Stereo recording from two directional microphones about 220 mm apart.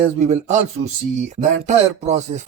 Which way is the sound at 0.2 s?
30° right (ahead or behind).